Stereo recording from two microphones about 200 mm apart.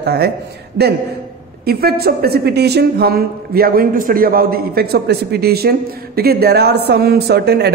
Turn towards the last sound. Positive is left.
turn(degrees=-55)  # may be behind; listen again after turning